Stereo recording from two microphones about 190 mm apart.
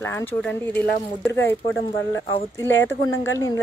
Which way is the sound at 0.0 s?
10° left (ahead or behind).